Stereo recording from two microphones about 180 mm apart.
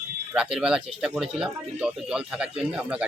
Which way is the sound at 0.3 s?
5° right (ahead or behind).